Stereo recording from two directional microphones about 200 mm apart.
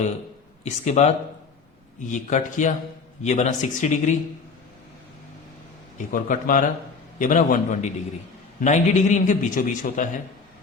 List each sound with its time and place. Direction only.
0.6 s a man's voice: 35° left (ahead or behind)
6.1 s a man's voice: 40° left (ahead or behind)